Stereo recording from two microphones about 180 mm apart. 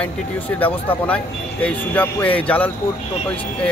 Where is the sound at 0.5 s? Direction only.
10° left (ahead or behind).